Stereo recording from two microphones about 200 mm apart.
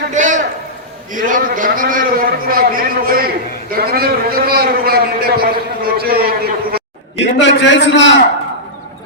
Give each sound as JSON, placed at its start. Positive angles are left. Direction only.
{"t": 0.1, "sound": "a sound", "side_deg": -40}
{"t": 1.1, "sound": "a man's voice", "side_deg": -40}
{"t": 7.2, "sound": "a man's voice", "side_deg": 65}